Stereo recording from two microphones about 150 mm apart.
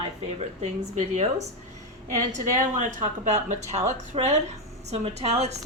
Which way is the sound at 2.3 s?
60° right (ahead or behind).